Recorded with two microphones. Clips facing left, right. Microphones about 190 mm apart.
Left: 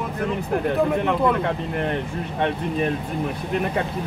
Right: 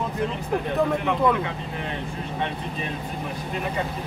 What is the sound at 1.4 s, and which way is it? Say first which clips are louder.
Speech: left 7 dB; 55° left (ahead or behind).